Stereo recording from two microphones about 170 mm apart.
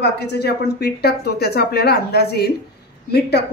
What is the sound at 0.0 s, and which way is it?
Speech, 75° left (ahead or behind).